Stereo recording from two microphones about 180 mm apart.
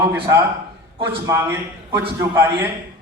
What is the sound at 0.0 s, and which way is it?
A man's voice, 15° right (ahead or behind).